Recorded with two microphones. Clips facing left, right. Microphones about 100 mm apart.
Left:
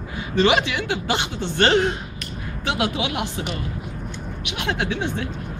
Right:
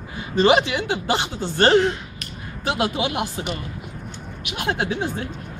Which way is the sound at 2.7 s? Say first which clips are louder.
Right 1 dB; 35° right (ahead or behind).